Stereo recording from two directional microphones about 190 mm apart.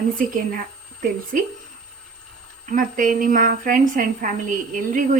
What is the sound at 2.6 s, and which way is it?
A woman's voice, 45° right (ahead or behind).